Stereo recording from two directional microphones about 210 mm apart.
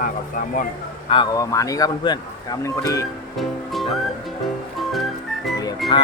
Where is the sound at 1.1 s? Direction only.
20° left (ahead or behind).